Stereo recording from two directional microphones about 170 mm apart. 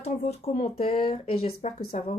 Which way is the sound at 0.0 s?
35° left (ahead or behind).